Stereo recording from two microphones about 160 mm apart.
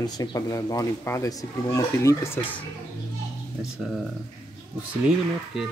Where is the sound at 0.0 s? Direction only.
25° left (ahead or behind).